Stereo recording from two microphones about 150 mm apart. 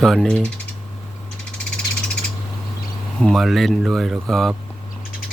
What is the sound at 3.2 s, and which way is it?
Speech, centre (ahead or behind).